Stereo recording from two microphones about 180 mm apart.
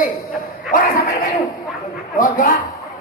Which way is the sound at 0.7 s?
55° left (ahead or behind).